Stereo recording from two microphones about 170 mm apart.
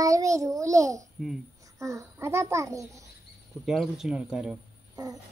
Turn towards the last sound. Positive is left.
turn(degrees=-20)  # may be behind; listen again after turning